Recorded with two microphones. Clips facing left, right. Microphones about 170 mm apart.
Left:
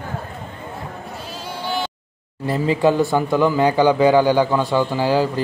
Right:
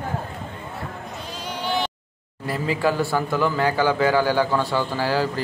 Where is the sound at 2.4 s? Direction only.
25° left (ahead or behind).